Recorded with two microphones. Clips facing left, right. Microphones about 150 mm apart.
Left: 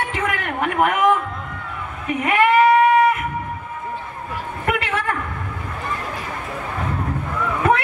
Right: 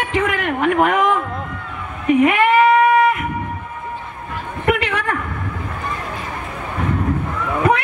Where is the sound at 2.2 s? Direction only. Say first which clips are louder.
Right 1 dB; 20° right (ahead or behind).